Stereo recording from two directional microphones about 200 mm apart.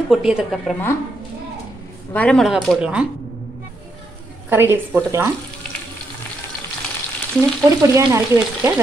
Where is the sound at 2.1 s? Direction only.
5° left (ahead or behind).